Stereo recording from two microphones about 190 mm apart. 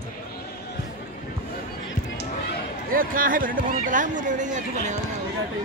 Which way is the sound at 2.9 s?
45° right (ahead or behind).